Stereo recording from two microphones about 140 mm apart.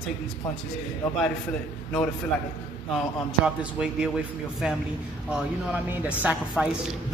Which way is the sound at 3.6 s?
5° right (ahead or behind).